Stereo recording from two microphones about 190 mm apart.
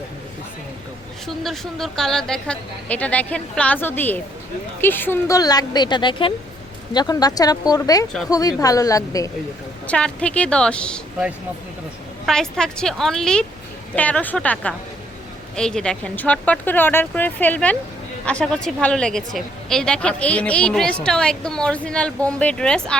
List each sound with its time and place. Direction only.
1.5 s speech: centre (ahead or behind); by 9.3 s 15° left (ahead or behind)
9.8 s a woman's voice: 5° left (ahead or behind)
12.2 s a woman's voice: 5° left (ahead or behind)